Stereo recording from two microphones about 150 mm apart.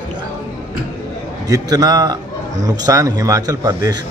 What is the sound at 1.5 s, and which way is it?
A man's voice, 25° right (ahead or behind).